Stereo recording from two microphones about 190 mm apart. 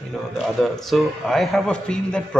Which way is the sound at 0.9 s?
Centre (ahead or behind).